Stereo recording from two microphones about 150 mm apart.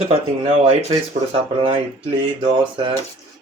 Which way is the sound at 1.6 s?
35° right (ahead or behind).